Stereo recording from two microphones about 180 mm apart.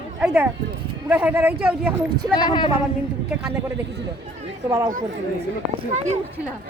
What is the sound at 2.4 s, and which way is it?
Speech, 25° left (ahead or behind).